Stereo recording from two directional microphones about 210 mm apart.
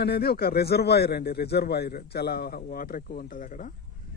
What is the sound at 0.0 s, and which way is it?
Speech, 50° left (ahead or behind).